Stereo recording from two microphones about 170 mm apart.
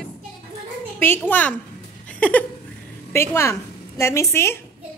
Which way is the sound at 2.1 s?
10° left (ahead or behind).